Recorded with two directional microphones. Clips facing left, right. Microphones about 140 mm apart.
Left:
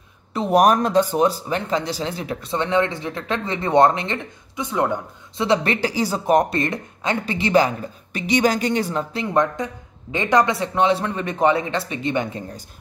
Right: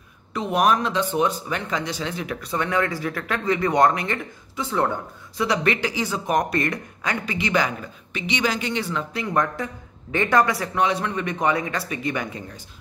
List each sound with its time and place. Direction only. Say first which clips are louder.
0.3 s speech: left 4 dB; 35° left (ahead or behind); by 4.9 s 15° left (ahead or behind)
5.4 s speech: left 3 dB; 30° left (ahead or behind)
9.1 s speech: left 3 dB; 25° left (ahead or behind)